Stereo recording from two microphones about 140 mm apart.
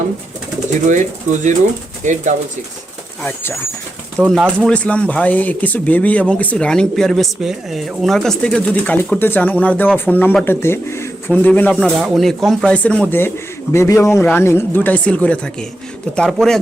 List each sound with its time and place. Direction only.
0.9 s speech: 60° right (ahead or behind)
3.2 s speech: 15° left (ahead or behind)
4.3 s speech: 5° left (ahead or behind)